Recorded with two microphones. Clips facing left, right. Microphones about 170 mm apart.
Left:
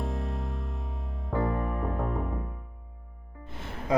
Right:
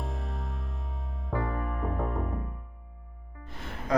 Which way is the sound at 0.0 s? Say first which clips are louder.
Left 4 dB; centre (ahead or behind).